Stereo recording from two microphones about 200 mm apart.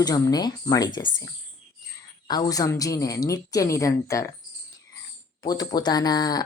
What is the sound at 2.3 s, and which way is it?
A woman's voice, 20° left (ahead or behind).